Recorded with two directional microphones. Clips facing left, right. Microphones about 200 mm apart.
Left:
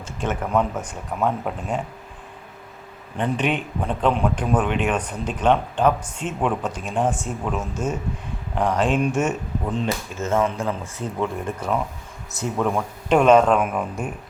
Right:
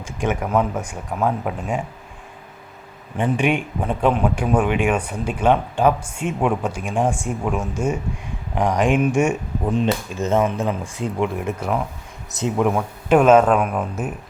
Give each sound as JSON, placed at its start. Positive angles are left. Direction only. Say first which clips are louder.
{"t": 0.0, "sound": "a man's voice", "louder": "right 3 dB", "side_deg": -10}
{"t": 3.2, "sound": "a man's voice", "louder": "right 3 dB", "side_deg": -10}
{"t": 12.7, "sound": "speech", "louder": "right 3 dB", "side_deg": -5}